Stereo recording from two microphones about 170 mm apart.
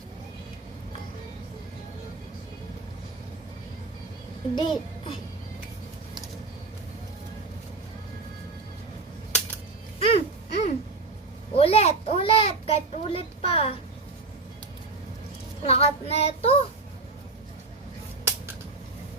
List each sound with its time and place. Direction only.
4.5 s a child's voice: 25° left (ahead or behind)
10.0 s a sound: 35° left (ahead or behind)
15.6 s child singing: 35° left (ahead or behind)